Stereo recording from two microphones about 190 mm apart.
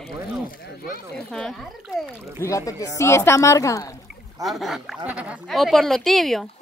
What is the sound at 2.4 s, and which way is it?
Speech, 15° left (ahead or behind).